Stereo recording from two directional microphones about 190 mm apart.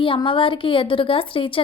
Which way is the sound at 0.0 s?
25° left (ahead or behind).